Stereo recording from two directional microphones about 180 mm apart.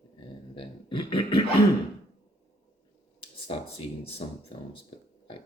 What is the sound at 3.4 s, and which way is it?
Speech, 30° left (ahead or behind).